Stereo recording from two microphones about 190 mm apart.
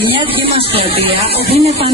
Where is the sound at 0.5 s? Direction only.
30° right (ahead or behind).